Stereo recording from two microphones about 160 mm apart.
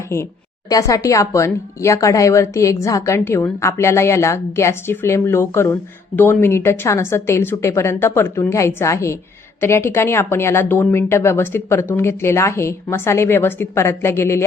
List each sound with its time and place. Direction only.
0.7 s speech: 20° left (ahead or behind)